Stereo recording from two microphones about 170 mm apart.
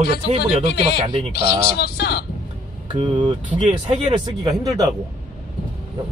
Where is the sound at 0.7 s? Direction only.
70° left (ahead or behind).